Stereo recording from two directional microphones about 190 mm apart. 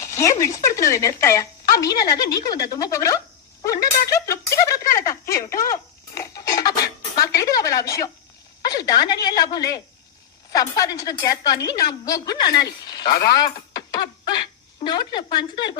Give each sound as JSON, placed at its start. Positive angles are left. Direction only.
{"t": 0.0, "sound": "speech", "side_deg": 15}
{"t": 3.6, "sound": "a sound", "side_deg": 15}
{"t": 5.3, "sound": "a woman's voice", "side_deg": 15}